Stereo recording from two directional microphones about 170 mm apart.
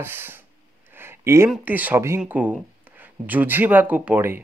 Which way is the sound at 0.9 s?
15° right (ahead or behind).